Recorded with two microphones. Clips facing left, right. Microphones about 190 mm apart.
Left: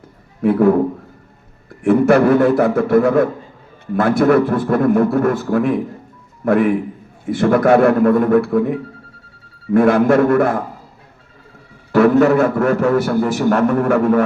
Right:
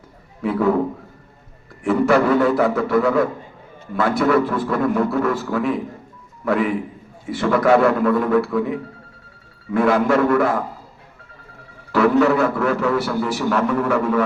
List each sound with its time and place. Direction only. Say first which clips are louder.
0.4 s a man's voice: left 6 dB; 55° left (ahead or behind)
1.8 s a man's voice: left 4 dB; 50° left (ahead or behind)
11.9 s a man's voice: left 4 dB; 45° left (ahead or behind)